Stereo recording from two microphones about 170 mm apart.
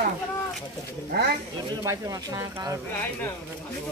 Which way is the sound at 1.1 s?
80° right.